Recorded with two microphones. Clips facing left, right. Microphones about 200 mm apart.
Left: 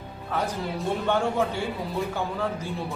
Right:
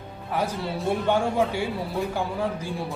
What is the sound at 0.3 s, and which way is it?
Speech, 10° right (ahead or behind).